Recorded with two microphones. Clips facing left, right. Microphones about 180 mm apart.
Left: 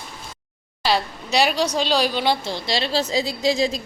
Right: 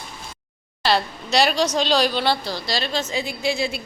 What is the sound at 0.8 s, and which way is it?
A woman's voice, 10° left (ahead or behind).